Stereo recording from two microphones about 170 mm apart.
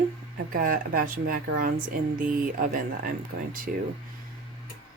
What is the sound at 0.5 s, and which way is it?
Speech, 55° right (ahead or behind).